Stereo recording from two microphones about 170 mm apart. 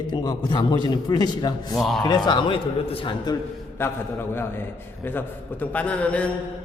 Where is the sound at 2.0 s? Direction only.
25° left (ahead or behind).